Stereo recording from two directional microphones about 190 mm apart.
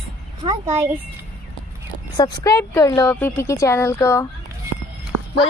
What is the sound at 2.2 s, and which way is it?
Speech, 15° left (ahead or behind).